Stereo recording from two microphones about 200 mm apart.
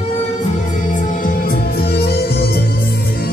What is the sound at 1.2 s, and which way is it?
Music, 45° left (ahead or behind).